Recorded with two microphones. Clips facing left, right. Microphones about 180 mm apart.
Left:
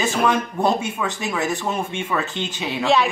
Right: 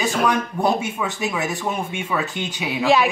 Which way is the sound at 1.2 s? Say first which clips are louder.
Even; 20° right (ahead or behind).